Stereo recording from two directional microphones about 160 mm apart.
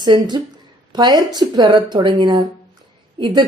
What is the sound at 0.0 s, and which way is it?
Speech, 30° right (ahead or behind).